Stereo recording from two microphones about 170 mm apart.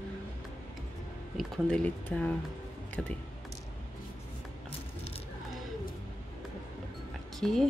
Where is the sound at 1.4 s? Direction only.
5° left (ahead or behind).